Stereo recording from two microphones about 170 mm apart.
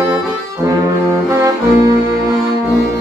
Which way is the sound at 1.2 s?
20° right (ahead or behind).